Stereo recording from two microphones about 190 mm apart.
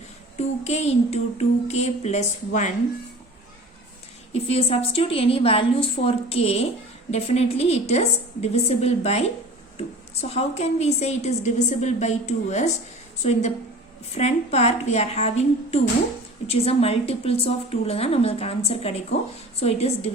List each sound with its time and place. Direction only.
0.3 s a woman's voice: 35° left (ahead or behind)
4.3 s a woman's voice: 30° left (ahead or behind)